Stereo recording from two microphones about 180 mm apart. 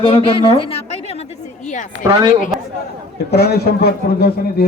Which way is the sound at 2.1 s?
25° right (ahead or behind).